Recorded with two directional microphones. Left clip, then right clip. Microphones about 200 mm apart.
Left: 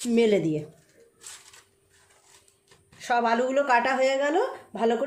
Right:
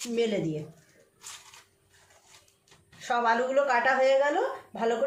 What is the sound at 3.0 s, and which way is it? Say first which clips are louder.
A woman's voice: left 2 dB; 45° left (ahead or behind).